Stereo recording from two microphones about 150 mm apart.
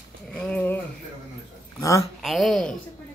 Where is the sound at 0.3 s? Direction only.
10° left (ahead or behind).